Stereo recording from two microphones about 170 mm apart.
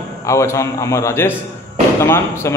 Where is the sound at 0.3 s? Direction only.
15° left (ahead or behind).